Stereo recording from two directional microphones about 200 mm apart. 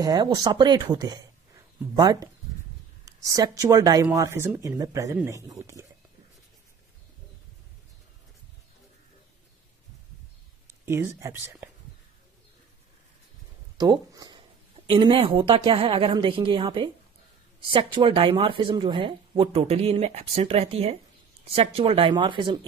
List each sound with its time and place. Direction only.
0.0 s speech: 20° right (ahead or behind)
10.9 s speech: 15° right (ahead or behind)
13.7 s a sound: 20° right (ahead or behind)
14.9 s speech: 25° right (ahead or behind)